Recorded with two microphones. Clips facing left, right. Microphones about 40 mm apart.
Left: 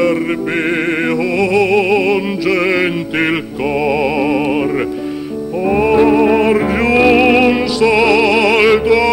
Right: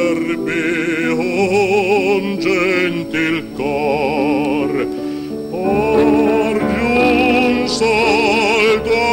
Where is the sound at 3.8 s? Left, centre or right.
Centre.